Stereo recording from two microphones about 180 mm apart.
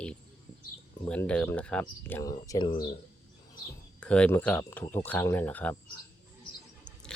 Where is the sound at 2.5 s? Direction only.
25° left (ahead or behind).